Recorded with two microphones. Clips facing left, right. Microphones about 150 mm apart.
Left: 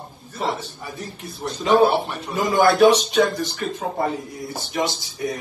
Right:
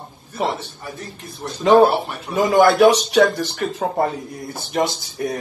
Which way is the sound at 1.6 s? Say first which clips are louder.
Right 4 dB; 55° right (ahead or behind).